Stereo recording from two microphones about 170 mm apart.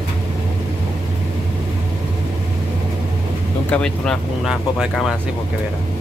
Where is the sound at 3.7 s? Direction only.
5° left (ahead or behind).